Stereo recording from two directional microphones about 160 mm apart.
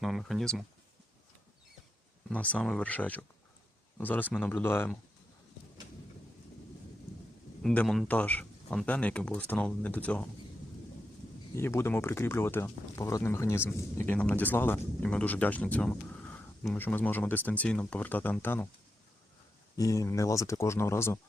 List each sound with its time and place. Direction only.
0.0 s speech: centre (ahead or behind)
2.3 s speech: 10° left (ahead or behind)
7.6 s speech: 5° left (ahead or behind)
11.5 s speech: 15° left (ahead or behind)
19.7 s speech: 20° left (ahead or behind)